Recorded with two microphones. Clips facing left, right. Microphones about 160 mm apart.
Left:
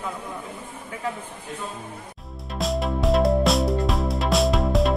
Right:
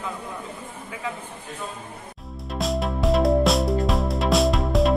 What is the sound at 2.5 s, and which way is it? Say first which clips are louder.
Music: even; centre (ahead or behind).